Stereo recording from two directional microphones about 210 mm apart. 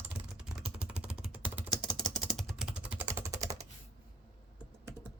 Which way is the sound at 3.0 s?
10° right (ahead or behind).